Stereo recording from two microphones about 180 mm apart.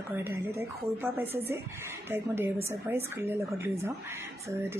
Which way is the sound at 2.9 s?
15° right (ahead or behind).